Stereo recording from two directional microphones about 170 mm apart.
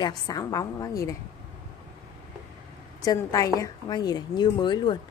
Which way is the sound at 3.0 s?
20° left (ahead or behind).